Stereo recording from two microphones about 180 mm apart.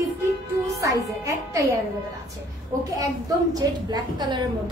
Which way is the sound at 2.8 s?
20° right (ahead or behind).